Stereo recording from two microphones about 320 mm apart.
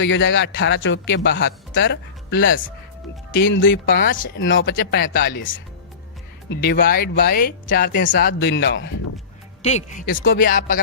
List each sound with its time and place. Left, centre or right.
0.0 s speech: left
9.6 s speech: left